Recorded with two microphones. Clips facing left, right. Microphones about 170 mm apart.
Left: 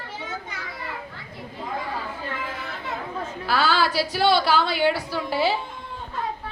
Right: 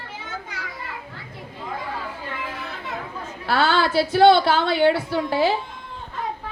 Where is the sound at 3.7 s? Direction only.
25° right (ahead or behind).